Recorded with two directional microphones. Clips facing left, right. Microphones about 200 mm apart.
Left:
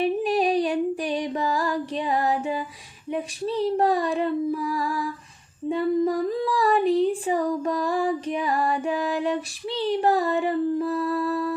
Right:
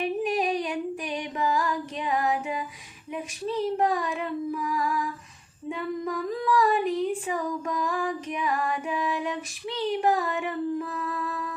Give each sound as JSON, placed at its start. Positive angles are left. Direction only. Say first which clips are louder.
{"t": 0.0, "sound": "female singing", "louder": "left 4 dB", "side_deg": 35}